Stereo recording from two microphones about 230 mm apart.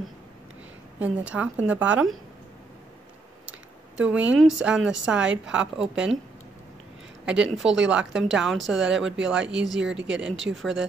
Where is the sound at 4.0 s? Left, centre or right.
Centre.